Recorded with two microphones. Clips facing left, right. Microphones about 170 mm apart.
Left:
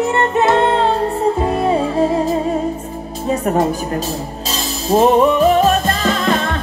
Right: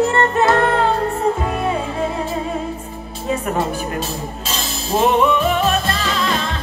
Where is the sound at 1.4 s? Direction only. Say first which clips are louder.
Left 5 dB; 35° left (ahead or behind).